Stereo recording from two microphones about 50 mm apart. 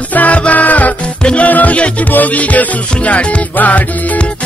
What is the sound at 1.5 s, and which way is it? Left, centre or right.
Music, left.